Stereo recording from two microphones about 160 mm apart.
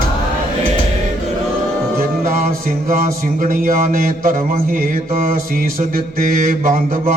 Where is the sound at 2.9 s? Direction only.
60° right (ahead or behind).